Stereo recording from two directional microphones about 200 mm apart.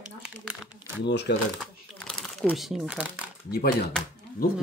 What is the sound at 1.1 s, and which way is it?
Speech, 60° left (ahead or behind).